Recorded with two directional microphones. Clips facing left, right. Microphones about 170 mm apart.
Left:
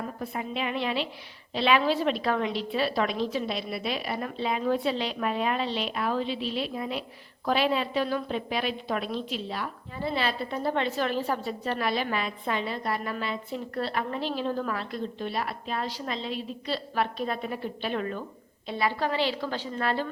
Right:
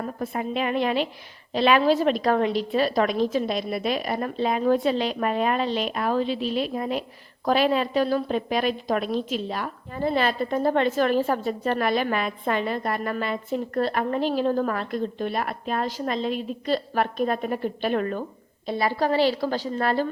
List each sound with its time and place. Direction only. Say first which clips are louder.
0.2 s a woman's voice: right 6 dB; 50° right (ahead or behind)